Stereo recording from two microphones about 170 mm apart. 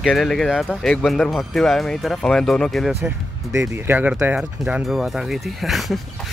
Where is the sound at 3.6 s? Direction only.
10° right (ahead or behind).